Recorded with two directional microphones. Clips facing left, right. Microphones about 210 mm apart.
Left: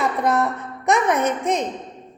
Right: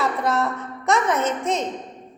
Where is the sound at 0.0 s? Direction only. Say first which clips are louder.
Left 2 dB; 15° left (ahead or behind).